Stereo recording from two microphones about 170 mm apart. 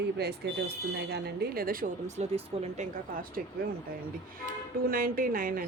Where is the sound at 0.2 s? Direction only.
75° right (ahead or behind); by 3.4 s 50° right (ahead or behind).